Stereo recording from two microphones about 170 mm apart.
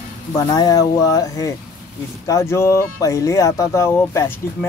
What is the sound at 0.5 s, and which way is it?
Speech, 20° left (ahead or behind).